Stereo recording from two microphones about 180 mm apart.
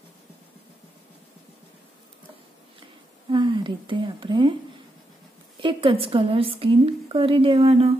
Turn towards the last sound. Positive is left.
turn(degrees=-35)  # may be behind; listen again after turning